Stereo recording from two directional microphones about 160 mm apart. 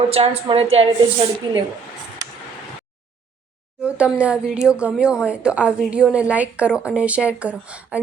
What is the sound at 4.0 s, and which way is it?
A woman's voice, 5° right (ahead or behind).